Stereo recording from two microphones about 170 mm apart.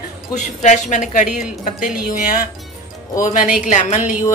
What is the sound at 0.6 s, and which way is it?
A woman's voice, 45° left (ahead or behind).